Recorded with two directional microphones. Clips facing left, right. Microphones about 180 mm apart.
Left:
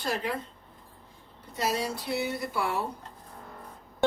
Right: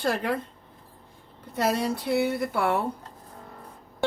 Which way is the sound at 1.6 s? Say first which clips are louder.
Right 5 dB; 55° right (ahead or behind).